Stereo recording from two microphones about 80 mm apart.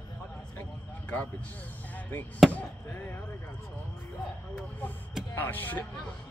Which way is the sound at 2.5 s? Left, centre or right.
Centre.